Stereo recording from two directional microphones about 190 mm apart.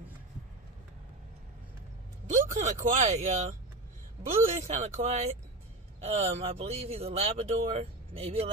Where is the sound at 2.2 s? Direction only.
40° right (ahead or behind).